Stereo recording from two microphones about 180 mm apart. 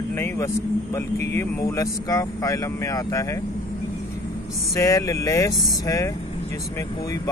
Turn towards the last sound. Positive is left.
turn(degrees=20)  # may be behind; listen again after turning